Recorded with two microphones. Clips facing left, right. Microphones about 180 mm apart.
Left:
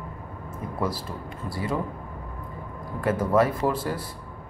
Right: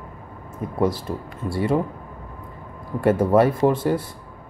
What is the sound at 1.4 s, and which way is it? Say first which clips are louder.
Speech: right 7 dB; 25° right (ahead or behind).